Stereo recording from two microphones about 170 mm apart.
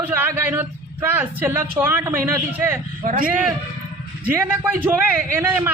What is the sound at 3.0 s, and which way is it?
Speech, 50° right (ahead or behind).